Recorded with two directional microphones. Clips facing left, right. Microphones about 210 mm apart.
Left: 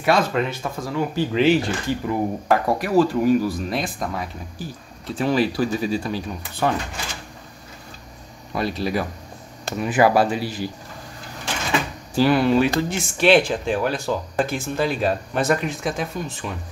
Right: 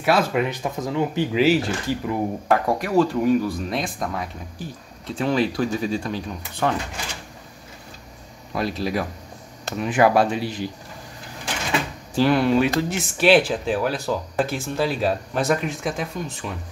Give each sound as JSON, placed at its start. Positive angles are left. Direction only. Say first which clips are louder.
{"t": 0.0, "sound": "speech", "louder": "even", "side_deg": -10}
{"t": 1.4, "sound": "speech", "louder": "left 1 dB", "side_deg": -5}
{"t": 8.5, "sound": "speech", "louder": "left 1 dB", "side_deg": 0}
{"t": 12.2, "sound": "speech", "louder": "left 1 dB", "side_deg": 5}